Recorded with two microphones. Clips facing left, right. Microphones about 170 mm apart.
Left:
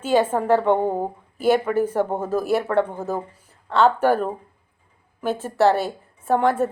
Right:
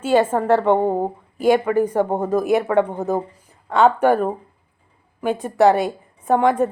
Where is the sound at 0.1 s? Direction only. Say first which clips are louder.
Right 2 dB; 10° left (ahead or behind).